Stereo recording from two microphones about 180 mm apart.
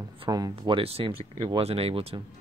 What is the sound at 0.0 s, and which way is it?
Speech, 20° right (ahead or behind).